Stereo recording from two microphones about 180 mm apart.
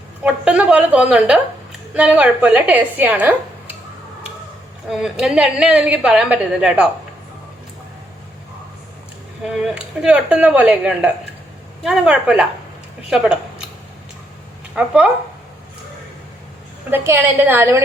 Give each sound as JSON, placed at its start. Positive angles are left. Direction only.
{"t": 0.3, "sound": "a woman's voice", "side_deg": -5}
{"t": 4.9, "sound": "a woman's voice", "side_deg": -5}
{"t": 9.7, "sound": "a woman's voice", "side_deg": -5}
{"t": 14.8, "sound": "speech", "side_deg": -5}
{"t": 16.9, "sound": "speech", "side_deg": -10}